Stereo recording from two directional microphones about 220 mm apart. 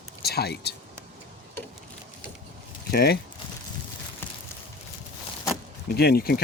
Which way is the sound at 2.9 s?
45° left (ahead or behind).